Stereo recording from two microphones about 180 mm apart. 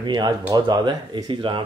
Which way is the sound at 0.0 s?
25° right (ahead or behind).